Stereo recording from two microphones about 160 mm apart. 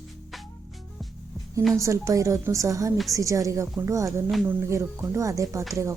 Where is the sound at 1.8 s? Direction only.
20° right (ahead or behind).